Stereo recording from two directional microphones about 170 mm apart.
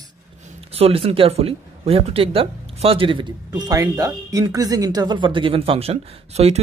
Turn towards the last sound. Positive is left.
turn(degrees=-40)  # may be behind; listen again after turning